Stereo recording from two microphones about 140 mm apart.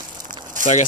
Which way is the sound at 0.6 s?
65° right (ahead or behind).